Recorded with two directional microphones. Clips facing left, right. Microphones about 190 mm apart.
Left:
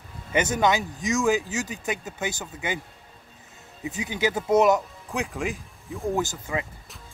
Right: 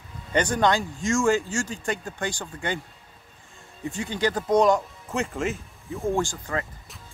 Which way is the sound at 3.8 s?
5° left (ahead or behind).